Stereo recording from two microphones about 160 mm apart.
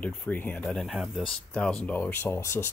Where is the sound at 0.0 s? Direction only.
10° left (ahead or behind).